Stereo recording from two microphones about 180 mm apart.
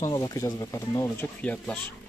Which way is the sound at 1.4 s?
10° left (ahead or behind).